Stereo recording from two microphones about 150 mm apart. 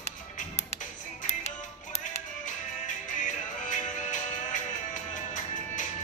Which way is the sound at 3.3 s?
55° left (ahead or behind).